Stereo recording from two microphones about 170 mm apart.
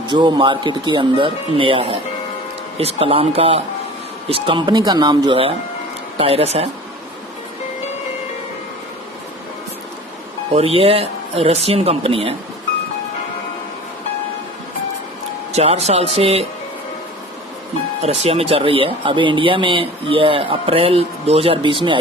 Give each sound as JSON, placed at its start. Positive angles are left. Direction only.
{"t": 0.1, "sound": "a man's voice", "side_deg": -25}
{"t": 10.5, "sound": "speech", "side_deg": -35}
{"t": 15.5, "sound": "speech", "side_deg": -35}
{"t": 18.0, "sound": "speech", "side_deg": -35}